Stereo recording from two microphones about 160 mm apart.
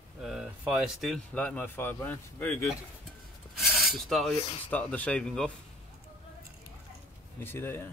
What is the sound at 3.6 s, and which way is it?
Filing, centre (ahead or behind).